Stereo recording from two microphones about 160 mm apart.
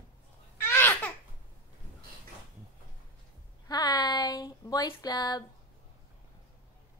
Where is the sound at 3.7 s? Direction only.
25° left (ahead or behind).